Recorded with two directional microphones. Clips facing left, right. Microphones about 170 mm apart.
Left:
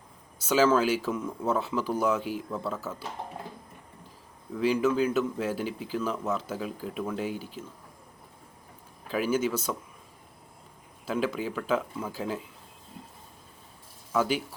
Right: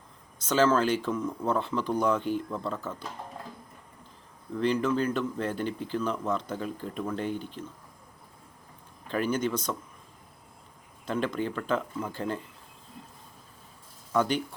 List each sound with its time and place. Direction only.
0.3 s speech: 10° left (ahead or behind)
4.5 s speech: 5° left (ahead or behind)
9.0 s speech: 5° left (ahead or behind)
11.0 s speech: 5° left (ahead or behind)
14.1 s speech: 5° left (ahead or behind)